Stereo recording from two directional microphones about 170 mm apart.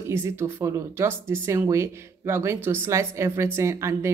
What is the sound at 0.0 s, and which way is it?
Speech, 15° right (ahead or behind).